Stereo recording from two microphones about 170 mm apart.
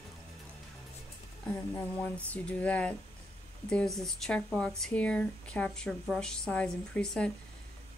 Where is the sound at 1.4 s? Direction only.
15° left (ahead or behind).